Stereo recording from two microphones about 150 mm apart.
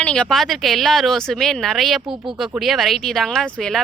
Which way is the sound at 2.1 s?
35° right (ahead or behind).